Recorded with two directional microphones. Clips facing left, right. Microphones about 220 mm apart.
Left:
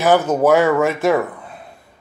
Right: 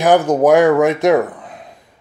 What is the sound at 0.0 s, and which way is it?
Speech, 15° right (ahead or behind).